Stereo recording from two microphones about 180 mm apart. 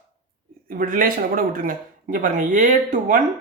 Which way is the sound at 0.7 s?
50° right (ahead or behind).